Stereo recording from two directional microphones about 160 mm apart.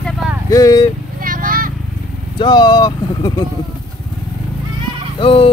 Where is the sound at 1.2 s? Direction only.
60° right (ahead or behind).